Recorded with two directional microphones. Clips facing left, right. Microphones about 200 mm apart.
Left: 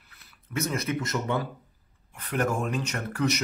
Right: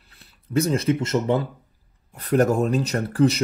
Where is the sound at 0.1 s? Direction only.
30° right (ahead or behind).